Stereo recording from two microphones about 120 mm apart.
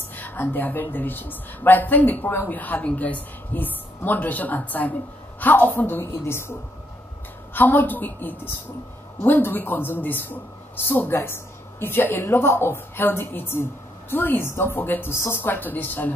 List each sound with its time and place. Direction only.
0.1 s a woman's voice: 15° left (ahead or behind)
7.5 s a woman's voice: 15° left (ahead or behind)